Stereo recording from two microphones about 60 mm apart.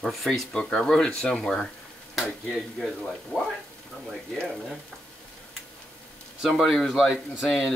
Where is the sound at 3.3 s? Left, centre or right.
Centre.